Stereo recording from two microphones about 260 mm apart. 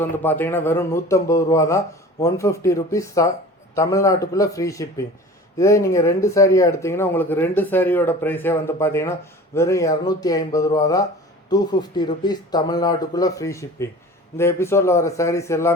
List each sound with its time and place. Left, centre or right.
0.0 s speech: centre